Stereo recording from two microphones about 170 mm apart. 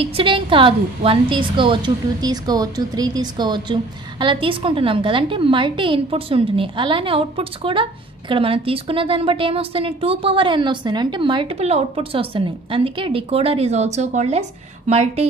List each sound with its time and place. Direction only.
0.0 s a woman's voice: 30° right (ahead or behind)